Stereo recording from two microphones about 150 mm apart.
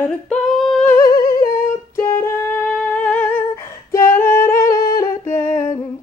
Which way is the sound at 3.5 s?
20° left (ahead or behind).